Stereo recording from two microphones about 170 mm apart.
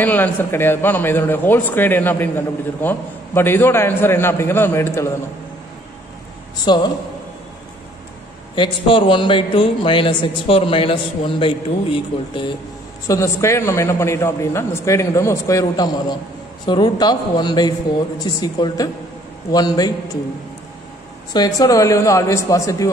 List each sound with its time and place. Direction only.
0.0 s a man's voice: 10° left (ahead or behind)
6.6 s a man's voice: 25° left (ahead or behind)
8.5 s a man's voice: 30° left (ahead or behind)
13.0 s a man's voice: 20° left (ahead or behind)
21.3 s a man's voice: 25° left (ahead or behind)